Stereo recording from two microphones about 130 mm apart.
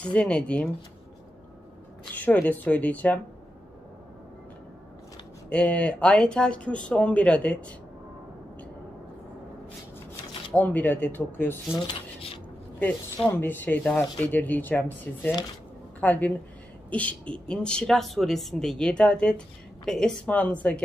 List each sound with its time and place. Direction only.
0.0 s speech: 10° left (ahead or behind)
2.1 s speech: 10° left (ahead or behind)
5.5 s speech: 10° left (ahead or behind)
10.5 s speech: 15° left (ahead or behind)